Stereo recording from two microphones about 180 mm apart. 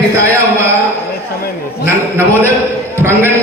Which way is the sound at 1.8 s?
15° right (ahead or behind).